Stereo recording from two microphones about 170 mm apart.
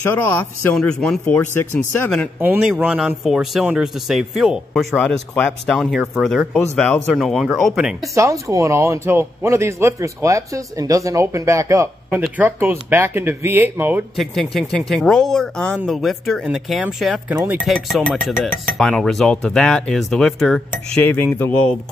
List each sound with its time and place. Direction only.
0.0 s speech: 10° left (ahead or behind)
2.4 s cutlery: 10° right (ahead or behind)
8.1 s a man's voice: 20° right (ahead or behind)
14.1 s cutlery: centre (ahead or behind)